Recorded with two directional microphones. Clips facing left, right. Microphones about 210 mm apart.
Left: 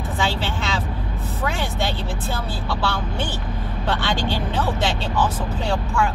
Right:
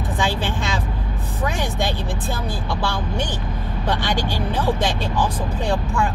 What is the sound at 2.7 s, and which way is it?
Speech, 15° right (ahead or behind).